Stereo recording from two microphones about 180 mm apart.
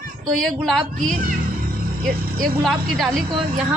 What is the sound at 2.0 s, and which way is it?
Speech, 55° right (ahead or behind).